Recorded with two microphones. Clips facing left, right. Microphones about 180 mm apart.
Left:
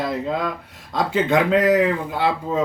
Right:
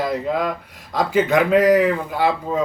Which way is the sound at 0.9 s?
25° left (ahead or behind).